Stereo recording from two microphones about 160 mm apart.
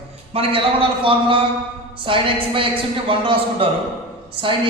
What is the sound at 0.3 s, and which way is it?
A man's voice, 35° right (ahead or behind).